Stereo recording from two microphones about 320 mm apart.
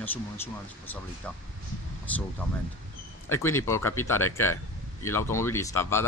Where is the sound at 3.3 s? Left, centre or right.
Centre.